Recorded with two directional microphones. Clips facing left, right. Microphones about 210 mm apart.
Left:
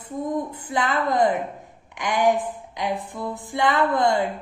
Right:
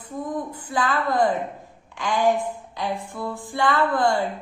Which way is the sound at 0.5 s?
20° left (ahead or behind).